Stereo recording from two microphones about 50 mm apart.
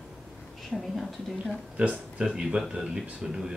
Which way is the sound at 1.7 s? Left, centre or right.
Right.